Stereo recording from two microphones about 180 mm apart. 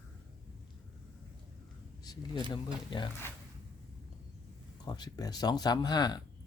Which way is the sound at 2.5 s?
25° left (ahead or behind).